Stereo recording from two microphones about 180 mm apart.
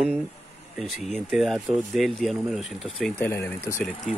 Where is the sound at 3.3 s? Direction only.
15° left (ahead or behind).